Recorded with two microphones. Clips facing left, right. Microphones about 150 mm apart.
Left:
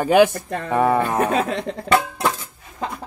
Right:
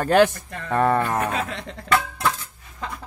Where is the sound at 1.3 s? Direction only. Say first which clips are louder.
Left 7 dB; 40° left (ahead or behind).